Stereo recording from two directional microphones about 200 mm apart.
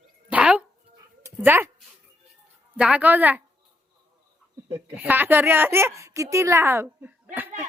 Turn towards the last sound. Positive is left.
turn(degrees=-10)  # may be behind; listen again after turning